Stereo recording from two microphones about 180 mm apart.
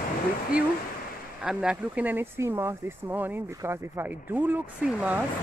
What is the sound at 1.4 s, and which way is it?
Speech, 5° right (ahead or behind).